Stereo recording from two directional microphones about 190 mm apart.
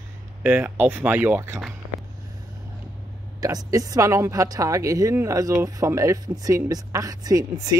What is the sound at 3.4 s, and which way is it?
Speech, 20° right (ahead or behind).